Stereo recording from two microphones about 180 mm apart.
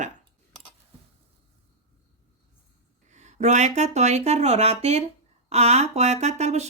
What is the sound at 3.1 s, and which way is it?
Speech, 40° right (ahead or behind).